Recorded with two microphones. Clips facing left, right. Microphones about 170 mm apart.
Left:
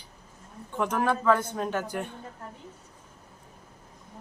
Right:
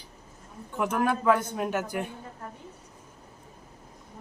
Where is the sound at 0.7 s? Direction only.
10° right (ahead or behind).